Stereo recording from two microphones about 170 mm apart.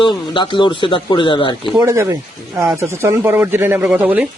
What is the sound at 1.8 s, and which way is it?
Speech, 15° right (ahead or behind).